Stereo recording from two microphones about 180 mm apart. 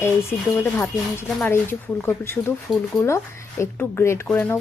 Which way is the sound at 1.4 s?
10° left (ahead or behind).